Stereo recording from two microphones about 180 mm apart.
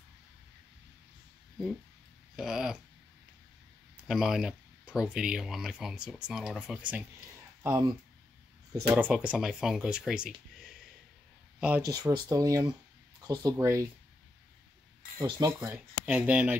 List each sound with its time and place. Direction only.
2.3 s speech: centre (ahead or behind)
3.9 s speech: centre (ahead or behind)
8.8 s speech: 5° right (ahead or behind)
11.9 s speech: 20° right (ahead or behind)
15.1 s speech: 20° right (ahead or behind)